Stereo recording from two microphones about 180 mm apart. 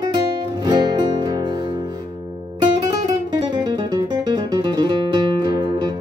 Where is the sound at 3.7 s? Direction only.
20° right (ahead or behind).